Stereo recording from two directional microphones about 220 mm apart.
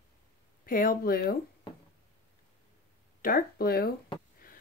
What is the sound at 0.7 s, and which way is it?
Speech, 40° left (ahead or behind).